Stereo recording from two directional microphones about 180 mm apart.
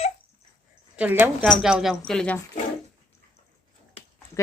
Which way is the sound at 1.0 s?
10° right (ahead or behind).